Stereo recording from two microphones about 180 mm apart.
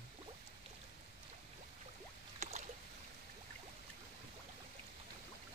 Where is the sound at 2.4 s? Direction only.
40° right (ahead or behind).